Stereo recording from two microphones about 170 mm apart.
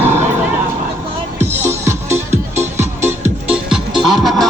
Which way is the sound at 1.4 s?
15° right (ahead or behind).